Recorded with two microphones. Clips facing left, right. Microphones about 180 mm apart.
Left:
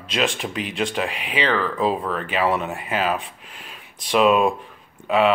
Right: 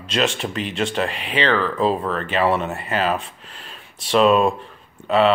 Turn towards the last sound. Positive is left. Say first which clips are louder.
# right 2 dB
turn(degrees=10)  # may be behind; listen again after turning